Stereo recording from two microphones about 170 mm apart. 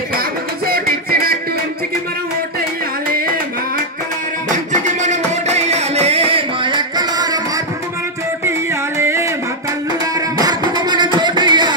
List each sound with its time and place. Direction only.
0.7 s music: 60° right (ahead or behind)
4.8 s music: 45° right (ahead or behind); by 7.3 s 25° right (ahead or behind)
8.5 s music: 15° right (ahead or behind)
10.4 s music: 25° right (ahead or behind)
11.1 s a sound: 25° right (ahead or behind)